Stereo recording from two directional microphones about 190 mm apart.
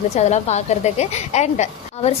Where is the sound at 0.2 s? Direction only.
35° left (ahead or behind).